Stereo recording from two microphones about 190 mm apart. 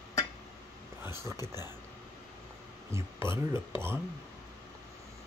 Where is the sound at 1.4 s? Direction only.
15° right (ahead or behind).